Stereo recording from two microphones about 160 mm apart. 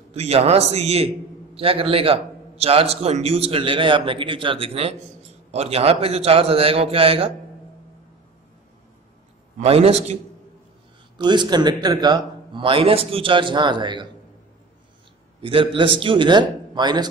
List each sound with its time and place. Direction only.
0.1 s a man's voice: 40° right (ahead or behind)
9.6 s a man's voice: 40° right (ahead or behind)
11.2 s a man's voice: 25° right (ahead or behind)
15.4 s a man's voice: 35° right (ahead or behind)